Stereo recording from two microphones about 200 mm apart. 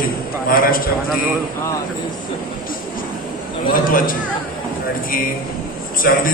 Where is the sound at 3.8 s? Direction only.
45° left (ahead or behind).